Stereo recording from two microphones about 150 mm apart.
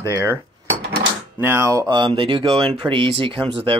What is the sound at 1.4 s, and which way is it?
Speech, 15° right (ahead or behind).